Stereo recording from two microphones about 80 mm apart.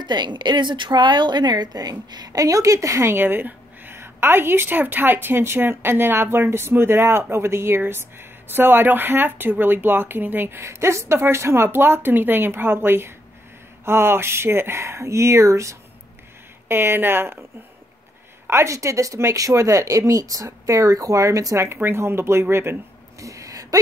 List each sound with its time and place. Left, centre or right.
0.0 s speech: right
16.6 s speech: right
18.5 s speech: right